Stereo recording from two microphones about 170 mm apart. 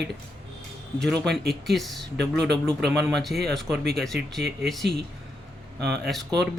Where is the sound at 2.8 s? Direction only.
75° right (ahead or behind).